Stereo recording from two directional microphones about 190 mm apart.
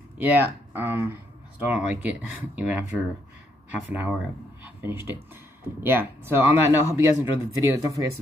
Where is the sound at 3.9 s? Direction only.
10° right (ahead or behind).